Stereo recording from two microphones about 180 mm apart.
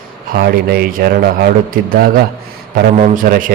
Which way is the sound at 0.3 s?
60° right (ahead or behind).